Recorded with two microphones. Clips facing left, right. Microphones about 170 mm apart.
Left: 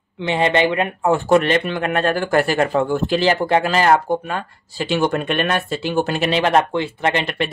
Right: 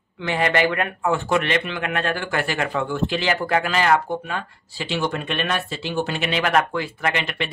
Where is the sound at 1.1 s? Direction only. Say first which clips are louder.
Left 6 dB; 35° left (ahead or behind).